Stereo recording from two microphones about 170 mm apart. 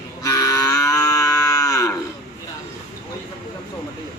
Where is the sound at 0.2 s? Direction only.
20° left (ahead or behind).